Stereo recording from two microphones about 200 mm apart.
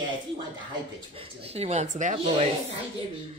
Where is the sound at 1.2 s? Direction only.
30° right (ahead or behind).